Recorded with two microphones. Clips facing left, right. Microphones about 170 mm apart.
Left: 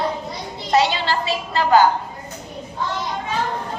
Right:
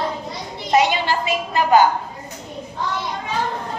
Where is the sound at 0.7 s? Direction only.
15° right (ahead or behind).